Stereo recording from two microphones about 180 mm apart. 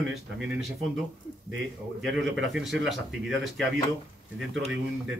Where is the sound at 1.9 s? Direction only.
90° right.